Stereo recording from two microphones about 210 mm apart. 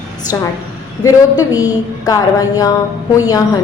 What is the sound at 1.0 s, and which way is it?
Speech, 15° left (ahead or behind).